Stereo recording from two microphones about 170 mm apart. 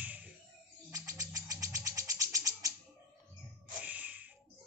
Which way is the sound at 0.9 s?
20° right (ahead or behind).